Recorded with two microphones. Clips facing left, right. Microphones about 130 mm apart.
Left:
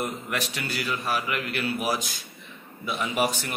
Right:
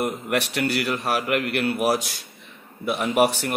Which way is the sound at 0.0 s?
70° right (ahead or behind).